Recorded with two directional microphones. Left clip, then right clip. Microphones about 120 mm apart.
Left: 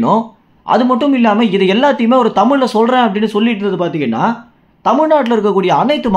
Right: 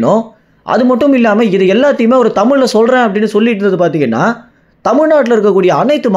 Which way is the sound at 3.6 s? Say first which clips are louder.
Right 5 dB; 35° right (ahead or behind).